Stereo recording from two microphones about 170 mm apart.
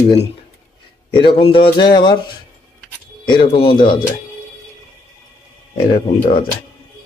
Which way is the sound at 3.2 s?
25° left (ahead or behind).